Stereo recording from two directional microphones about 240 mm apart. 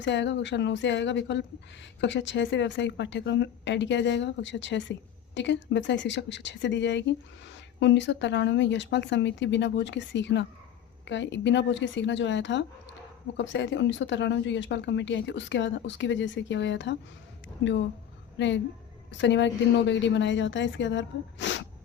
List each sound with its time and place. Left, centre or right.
0.0 s a woman's voice: left